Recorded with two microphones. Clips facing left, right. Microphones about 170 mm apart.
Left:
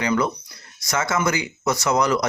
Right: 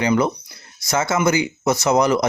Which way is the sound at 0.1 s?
25° right (ahead or behind).